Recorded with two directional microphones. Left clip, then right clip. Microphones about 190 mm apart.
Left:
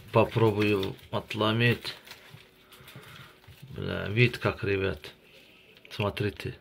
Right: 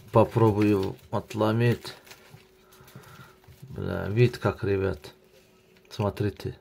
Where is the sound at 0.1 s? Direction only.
50° right (ahead or behind).